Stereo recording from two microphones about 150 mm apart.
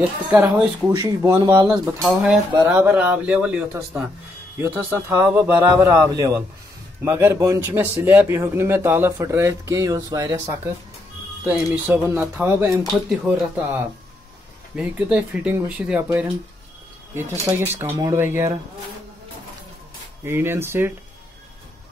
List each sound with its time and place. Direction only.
0.3 s a man's voice: 15° right (ahead or behind)
2.0 s speech: centre (ahead or behind)
2.5 s a man's voice: 10° right (ahead or behind)
11.4 s a man's voice: 10° right (ahead or behind)
17.5 s a man's voice: 15° right (ahead or behind)
20.2 s a man's voice: 15° right (ahead or behind)